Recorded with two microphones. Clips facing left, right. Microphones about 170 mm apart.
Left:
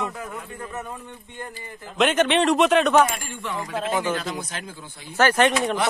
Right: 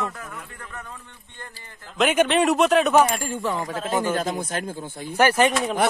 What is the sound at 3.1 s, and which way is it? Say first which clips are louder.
Speech: right 5 dB; 40° right (ahead or behind).